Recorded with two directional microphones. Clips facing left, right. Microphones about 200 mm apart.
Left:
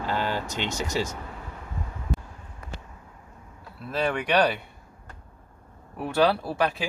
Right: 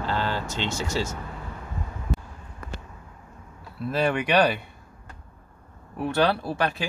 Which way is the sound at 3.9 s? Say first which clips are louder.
Right 2 dB; centre (ahead or behind).